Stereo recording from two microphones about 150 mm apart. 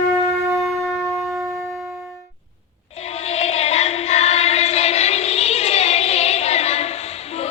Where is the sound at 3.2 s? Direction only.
45° left (ahead or behind).